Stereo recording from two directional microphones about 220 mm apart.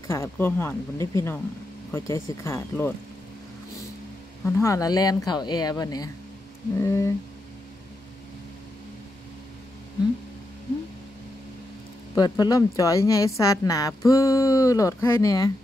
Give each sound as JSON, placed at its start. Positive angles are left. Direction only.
{"t": 0.1, "sound": "speech", "side_deg": 10}
{"t": 4.6, "sound": "speech", "side_deg": 15}
{"t": 12.2, "sound": "speech", "side_deg": 15}